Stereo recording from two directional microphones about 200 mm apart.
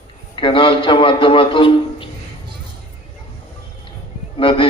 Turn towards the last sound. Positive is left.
turn(degrees=25)  # may be behind; listen again after turning